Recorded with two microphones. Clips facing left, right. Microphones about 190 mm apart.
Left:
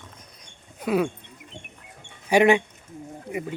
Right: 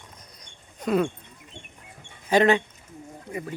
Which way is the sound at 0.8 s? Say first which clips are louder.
Even; 5° left (ahead or behind).